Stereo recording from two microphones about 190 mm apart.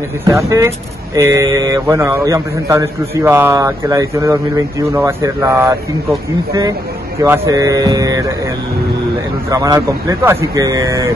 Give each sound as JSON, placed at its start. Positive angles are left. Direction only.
{"t": 0.2, "sound": "speech", "side_deg": -15}
{"t": 7.2, "sound": "speech", "side_deg": -15}
{"t": 9.5, "sound": "speech", "side_deg": -20}